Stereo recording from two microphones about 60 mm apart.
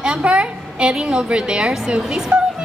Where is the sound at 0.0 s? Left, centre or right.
Centre.